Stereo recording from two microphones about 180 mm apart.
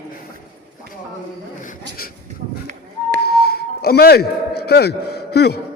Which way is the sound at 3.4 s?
60° left (ahead or behind).